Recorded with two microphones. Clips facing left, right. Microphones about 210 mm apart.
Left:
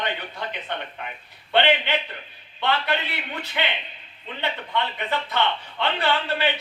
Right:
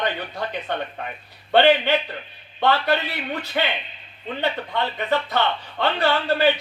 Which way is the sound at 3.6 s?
45° right (ahead or behind).